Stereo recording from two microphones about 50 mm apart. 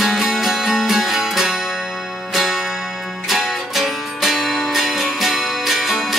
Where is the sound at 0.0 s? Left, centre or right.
Centre.